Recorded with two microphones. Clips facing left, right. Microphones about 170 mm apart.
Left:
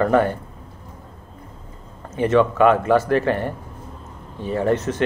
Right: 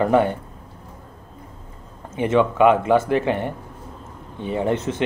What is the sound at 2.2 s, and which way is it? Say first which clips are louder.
Speech: left 1 dB; 15° right (ahead or behind).